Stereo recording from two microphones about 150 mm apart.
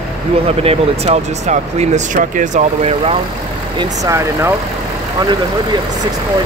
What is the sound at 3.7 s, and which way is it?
Speech, 25° right (ahead or behind).